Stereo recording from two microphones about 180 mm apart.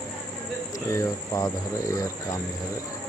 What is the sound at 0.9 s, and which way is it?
Speech, 20° left (ahead or behind).